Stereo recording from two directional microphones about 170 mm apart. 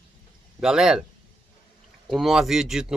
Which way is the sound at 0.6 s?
5° right (ahead or behind).